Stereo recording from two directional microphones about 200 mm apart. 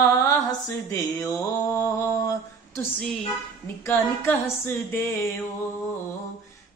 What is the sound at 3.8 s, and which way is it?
Female singing, 10° left (ahead or behind).